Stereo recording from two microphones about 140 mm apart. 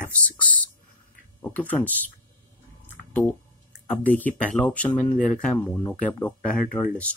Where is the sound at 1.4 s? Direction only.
10° left (ahead or behind).